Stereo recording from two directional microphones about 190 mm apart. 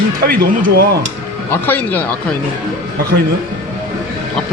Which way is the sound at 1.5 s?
10° left (ahead or behind).